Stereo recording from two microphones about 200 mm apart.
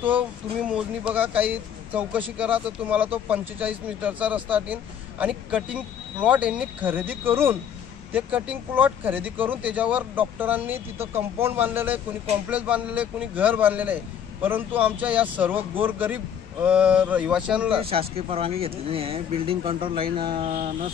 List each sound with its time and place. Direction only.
0.7 s speech: 5° right (ahead or behind)
17.7 s speech: 30° right (ahead or behind)